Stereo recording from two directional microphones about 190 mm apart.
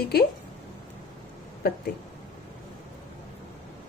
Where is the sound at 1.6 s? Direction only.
55° left (ahead or behind).